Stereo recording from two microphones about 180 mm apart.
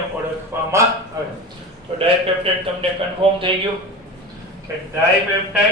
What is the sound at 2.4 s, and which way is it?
Speech, 30° right (ahead or behind).